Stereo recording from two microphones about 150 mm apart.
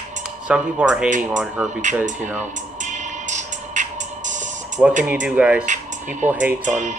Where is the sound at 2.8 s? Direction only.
55° right (ahead or behind).